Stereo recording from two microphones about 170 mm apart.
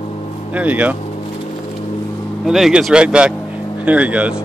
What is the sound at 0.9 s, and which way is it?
Vehicle, 40° left (ahead or behind).